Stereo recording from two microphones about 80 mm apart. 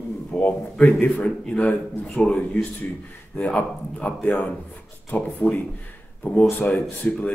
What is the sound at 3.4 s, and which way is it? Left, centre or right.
Speech, left.